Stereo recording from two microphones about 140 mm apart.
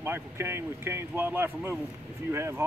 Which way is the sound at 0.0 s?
15° right (ahead or behind).